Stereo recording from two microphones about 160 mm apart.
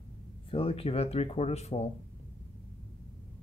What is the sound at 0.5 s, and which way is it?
Speech, 35° left (ahead or behind).